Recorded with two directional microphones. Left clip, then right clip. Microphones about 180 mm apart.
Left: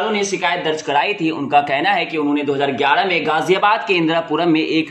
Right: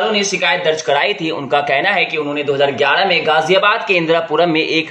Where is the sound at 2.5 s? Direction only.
50° left (ahead or behind); by 4.9 s 25° left (ahead or behind).